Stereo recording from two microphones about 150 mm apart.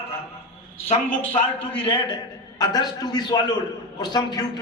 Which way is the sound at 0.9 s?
55° left (ahead or behind).